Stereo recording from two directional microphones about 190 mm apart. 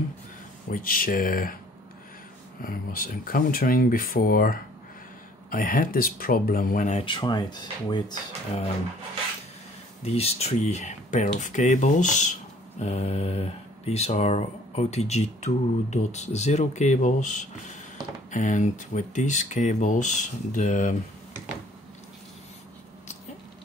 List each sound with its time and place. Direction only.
0.7 s speech: 50° left (ahead or behind)
2.6 s speech: 50° left (ahead or behind)
7.1 s speech: 25° left (ahead or behind)
10.0 s speech: 35° left (ahead or behind)